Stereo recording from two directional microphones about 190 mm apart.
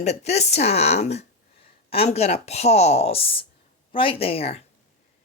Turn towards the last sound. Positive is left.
turn(degrees=30)  # may be behind; listen again after turning